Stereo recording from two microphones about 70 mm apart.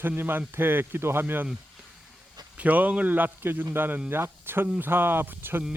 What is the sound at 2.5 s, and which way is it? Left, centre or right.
Speech, right.